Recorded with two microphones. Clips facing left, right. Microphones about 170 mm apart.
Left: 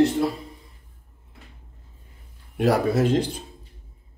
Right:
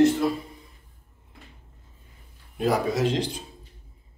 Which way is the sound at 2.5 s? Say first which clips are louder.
Left 3 dB; 70° left (ahead or behind).